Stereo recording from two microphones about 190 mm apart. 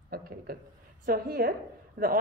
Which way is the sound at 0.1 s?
50° right (ahead or behind).